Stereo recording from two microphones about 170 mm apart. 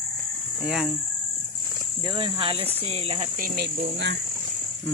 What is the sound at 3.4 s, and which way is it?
Speech, 65° right (ahead or behind).